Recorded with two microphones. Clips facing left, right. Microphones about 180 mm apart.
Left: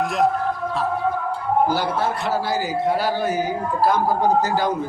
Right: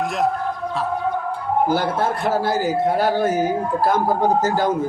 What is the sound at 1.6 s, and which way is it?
A man's voice, 50° right (ahead or behind).